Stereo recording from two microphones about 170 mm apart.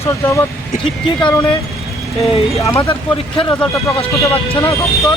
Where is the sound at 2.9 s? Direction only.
30° left (ahead or behind).